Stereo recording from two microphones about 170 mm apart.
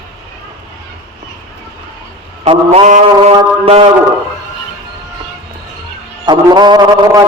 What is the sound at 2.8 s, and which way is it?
Mantra, 45° right (ahead or behind).